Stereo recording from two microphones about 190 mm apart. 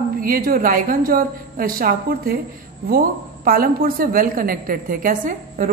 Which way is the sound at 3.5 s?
50° right (ahead or behind).